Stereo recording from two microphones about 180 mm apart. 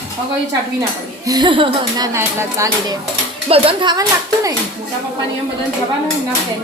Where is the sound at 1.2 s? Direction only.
25° right (ahead or behind).